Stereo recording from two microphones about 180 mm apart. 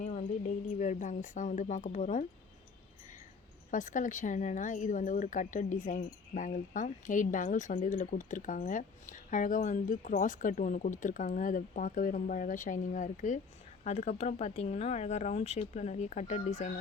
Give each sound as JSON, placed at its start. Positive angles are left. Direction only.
{"t": 0.0, "sound": "a woman's voice", "side_deg": 40}
{"t": 3.7, "sound": "a woman's voice", "side_deg": 45}